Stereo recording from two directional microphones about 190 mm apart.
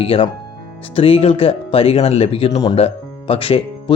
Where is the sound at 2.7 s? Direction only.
30° left (ahead or behind).